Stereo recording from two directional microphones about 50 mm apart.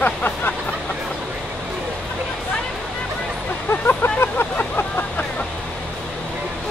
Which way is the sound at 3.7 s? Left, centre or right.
Left.